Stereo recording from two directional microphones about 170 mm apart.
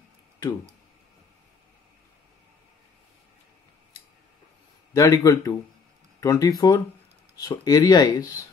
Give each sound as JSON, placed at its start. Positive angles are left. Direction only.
{"t": 4.9, "sound": "speech", "side_deg": 20}